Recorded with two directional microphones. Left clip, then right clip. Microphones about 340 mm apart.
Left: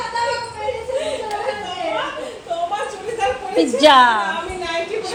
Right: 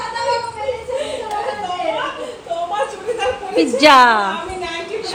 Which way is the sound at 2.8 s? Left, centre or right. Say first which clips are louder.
Right 2 dB; centre.